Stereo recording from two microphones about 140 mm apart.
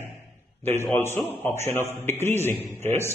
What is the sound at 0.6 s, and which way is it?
A man's voice, 15° left (ahead or behind).